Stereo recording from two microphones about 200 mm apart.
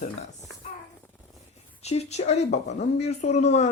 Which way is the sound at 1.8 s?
30° left (ahead or behind).